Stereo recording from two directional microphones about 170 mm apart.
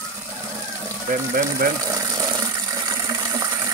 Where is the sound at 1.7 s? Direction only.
20° right (ahead or behind).